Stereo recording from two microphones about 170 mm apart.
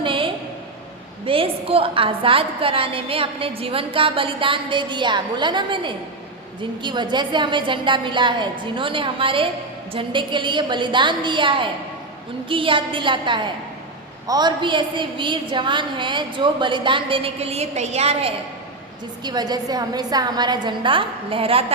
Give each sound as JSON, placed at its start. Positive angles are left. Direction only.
{"t": 0.0, "sound": "a sound", "side_deg": -30}
{"t": 1.2, "sound": "a woman's voice", "side_deg": -30}
{"t": 19.2, "sound": "a woman's voice", "side_deg": -25}